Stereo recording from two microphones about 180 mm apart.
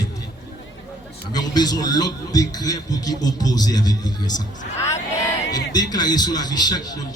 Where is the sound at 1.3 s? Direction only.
20° left (ahead or behind).